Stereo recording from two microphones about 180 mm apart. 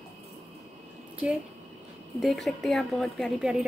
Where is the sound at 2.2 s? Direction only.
Centre (ahead or behind).